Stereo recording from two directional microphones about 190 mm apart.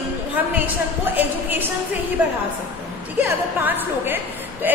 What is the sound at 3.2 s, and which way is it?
A woman's voice, 10° right (ahead or behind).